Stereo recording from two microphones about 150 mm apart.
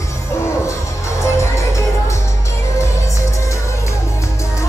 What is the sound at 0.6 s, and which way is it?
Music, 20° left (ahead or behind).